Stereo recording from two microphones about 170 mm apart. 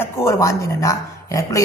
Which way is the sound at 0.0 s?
15° left (ahead or behind).